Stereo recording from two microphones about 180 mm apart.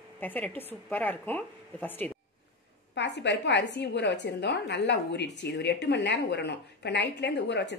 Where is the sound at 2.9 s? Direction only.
75° left (ahead or behind).